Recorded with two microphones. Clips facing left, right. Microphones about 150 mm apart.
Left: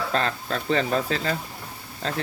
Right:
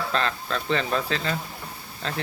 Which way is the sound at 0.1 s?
40° left (ahead or behind).